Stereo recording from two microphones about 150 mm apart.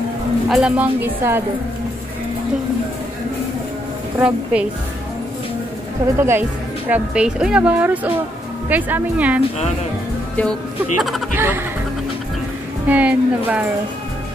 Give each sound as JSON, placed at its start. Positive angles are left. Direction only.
{"t": 0.5, "sound": "a woman's voice", "side_deg": -5}
{"t": 4.2, "sound": "a woman's voice", "side_deg": -5}
{"t": 6.1, "sound": "a woman's voice", "side_deg": -15}
{"t": 11.0, "sound": "speech", "side_deg": 0}
{"t": 11.3, "sound": "a woman's voice", "side_deg": -15}
{"t": 12.8, "sound": "a woman's voice", "side_deg": -10}